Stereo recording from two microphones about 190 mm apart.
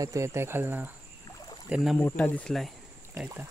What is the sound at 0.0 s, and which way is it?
Speech, 15° right (ahead or behind).